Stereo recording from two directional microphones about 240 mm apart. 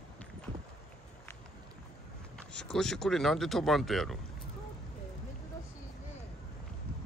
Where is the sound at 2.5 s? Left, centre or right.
Centre.